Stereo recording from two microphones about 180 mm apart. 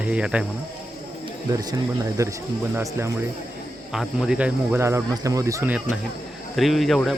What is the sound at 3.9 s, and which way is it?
Speech, centre (ahead or behind).